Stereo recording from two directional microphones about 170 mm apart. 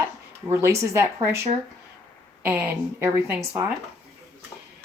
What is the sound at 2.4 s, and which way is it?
Speech, 10° right (ahead or behind).